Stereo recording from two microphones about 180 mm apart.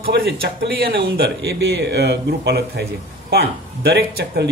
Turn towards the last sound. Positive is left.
turn(degrees=-60)  # may be behind; listen again after turning